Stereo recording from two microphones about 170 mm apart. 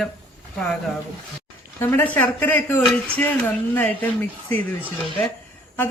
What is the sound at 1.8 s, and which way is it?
Speech, 10° left (ahead or behind).